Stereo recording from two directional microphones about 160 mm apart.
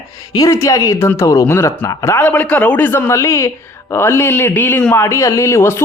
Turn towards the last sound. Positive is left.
turn(degrees=15)  # may be behind; listen again after turning